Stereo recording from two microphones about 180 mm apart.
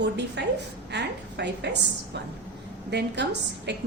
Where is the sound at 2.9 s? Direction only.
70° right (ahead or behind).